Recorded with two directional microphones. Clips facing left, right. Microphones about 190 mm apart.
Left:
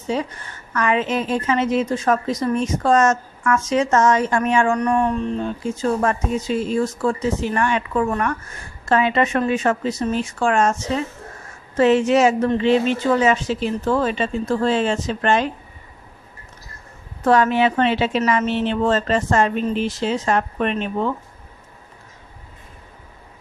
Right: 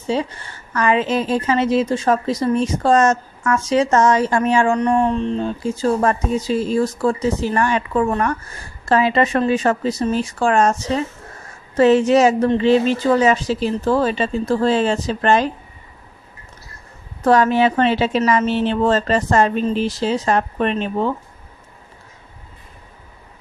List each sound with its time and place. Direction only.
0.1 s a woman's voice: 30° right (ahead or behind)
17.2 s a woman's voice: 40° right (ahead or behind)